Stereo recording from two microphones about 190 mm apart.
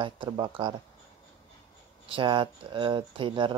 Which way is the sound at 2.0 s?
25° right (ahead or behind).